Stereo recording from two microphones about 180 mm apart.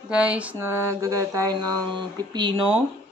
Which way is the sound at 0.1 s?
5° right (ahead or behind).